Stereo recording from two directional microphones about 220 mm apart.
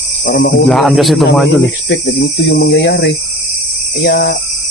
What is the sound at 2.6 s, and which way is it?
Speech, 50° left (ahead or behind).